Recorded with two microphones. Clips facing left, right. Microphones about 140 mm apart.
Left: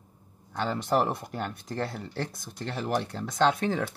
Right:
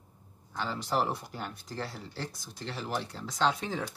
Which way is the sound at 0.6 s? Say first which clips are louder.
Left 5 dB; 55° left (ahead or behind).